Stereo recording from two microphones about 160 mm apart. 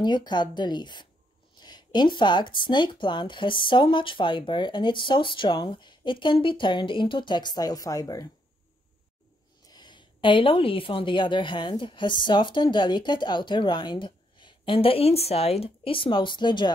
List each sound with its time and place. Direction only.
0.0 s speech: 25° left (ahead or behind)
9.7 s a woman's voice: 25° left (ahead or behind)